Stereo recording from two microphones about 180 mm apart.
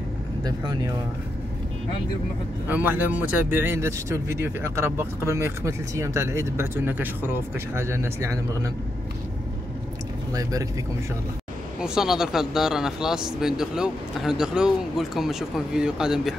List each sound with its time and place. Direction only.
0.4 s speech: 20° right (ahead or behind)
2.7 s speech: 10° right (ahead or behind)
10.3 s speech: 20° right (ahead or behind)
11.8 s speech: 5° right (ahead or behind)